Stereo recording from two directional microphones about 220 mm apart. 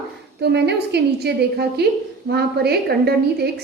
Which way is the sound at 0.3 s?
50° right (ahead or behind).